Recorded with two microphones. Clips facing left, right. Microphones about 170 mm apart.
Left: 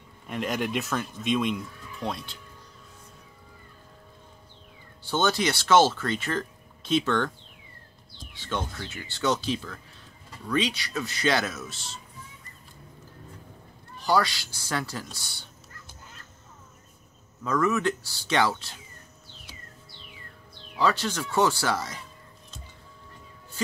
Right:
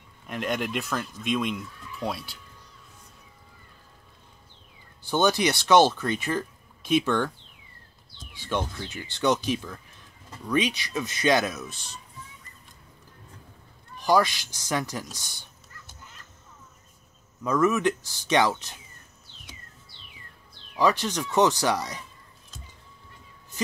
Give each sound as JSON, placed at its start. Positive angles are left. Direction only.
{"t": 0.3, "sound": "speech", "side_deg": 0}
{"t": 5.0, "sound": "speech", "side_deg": -15}
{"t": 13.9, "sound": "speech", "side_deg": -15}
{"t": 17.4, "sound": "speech", "side_deg": -15}
{"t": 20.7, "sound": "speech", "side_deg": -15}